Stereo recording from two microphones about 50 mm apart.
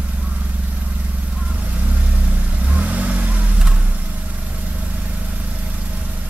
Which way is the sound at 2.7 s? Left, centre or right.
Right.